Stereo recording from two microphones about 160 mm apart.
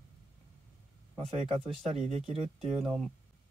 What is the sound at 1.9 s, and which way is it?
Speech, 40° right (ahead or behind).